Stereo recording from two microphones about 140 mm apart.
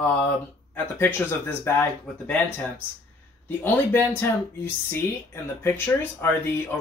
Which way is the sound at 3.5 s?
15° left (ahead or behind).